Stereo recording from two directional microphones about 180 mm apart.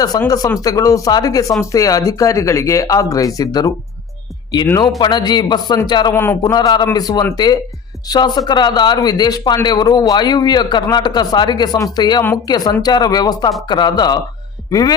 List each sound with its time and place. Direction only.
0.2 s a man's voice: 20° left (ahead or behind)